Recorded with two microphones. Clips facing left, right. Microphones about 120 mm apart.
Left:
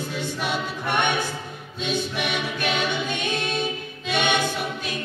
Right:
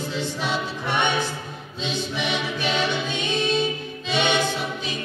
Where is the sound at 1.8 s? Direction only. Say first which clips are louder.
Left 1 dB; 50° left (ahead or behind).